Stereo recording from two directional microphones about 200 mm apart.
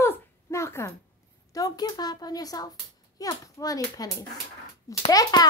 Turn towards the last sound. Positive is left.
turn(degrees=20)  # may be behind; listen again after turning